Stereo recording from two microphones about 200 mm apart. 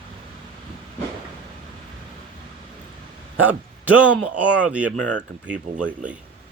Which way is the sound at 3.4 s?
10° right (ahead or behind).